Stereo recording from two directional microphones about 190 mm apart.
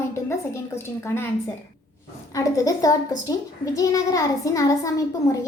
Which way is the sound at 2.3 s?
15° left (ahead or behind).